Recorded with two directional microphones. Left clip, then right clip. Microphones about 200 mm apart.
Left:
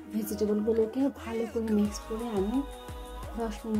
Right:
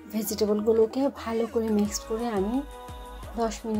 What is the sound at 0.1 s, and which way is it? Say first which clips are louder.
Speech: right 4 dB; 10° right (ahead or behind).